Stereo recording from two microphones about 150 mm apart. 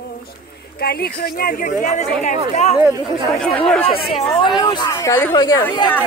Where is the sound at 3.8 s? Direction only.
40° left (ahead or behind).